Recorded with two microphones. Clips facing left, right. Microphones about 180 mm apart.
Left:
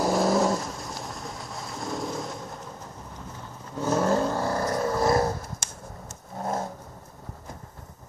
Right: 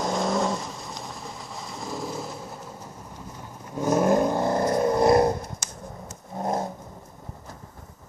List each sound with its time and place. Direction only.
0.0 s vehicle: 5° left (ahead or behind)
3.7 s vehicle: 15° right (ahead or behind)